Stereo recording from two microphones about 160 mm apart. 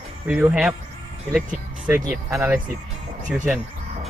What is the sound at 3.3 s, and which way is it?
Speech, 10° right (ahead or behind).